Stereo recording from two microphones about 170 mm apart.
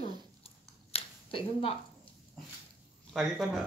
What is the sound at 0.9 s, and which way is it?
Finger snapping, 30° left (ahead or behind).